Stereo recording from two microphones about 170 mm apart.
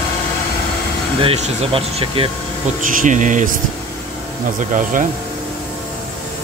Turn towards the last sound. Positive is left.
turn(degrees=-50)  # may be behind; listen again after turning